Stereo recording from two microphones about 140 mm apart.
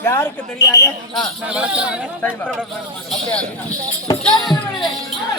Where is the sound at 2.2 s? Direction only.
10° left (ahead or behind).